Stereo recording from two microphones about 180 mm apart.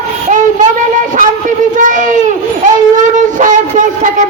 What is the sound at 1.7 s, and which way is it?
Baby cry, 45° right (ahead or behind).